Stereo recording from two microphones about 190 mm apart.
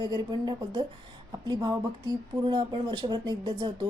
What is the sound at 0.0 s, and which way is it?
Speech, 20° right (ahead or behind).